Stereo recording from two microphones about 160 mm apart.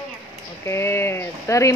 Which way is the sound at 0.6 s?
15° left (ahead or behind).